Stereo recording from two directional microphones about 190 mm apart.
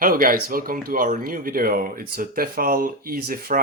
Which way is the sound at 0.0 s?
45° right (ahead or behind).